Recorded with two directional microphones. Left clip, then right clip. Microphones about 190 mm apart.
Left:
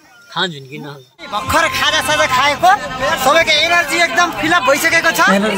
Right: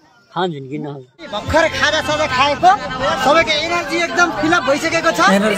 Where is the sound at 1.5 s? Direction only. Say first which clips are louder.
Even; 5° right (ahead or behind).